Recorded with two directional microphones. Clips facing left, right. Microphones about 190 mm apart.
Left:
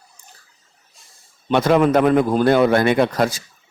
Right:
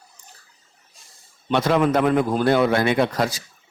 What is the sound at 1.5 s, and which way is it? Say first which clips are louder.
Speech: left 4 dB; 50° left (ahead or behind).